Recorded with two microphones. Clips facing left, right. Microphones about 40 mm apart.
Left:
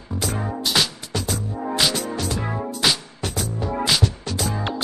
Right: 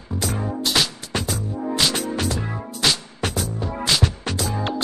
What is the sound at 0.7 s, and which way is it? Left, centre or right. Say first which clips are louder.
Music: left 1 dB; centre.